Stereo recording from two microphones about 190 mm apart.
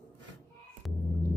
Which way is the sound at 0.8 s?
Centre (ahead or behind).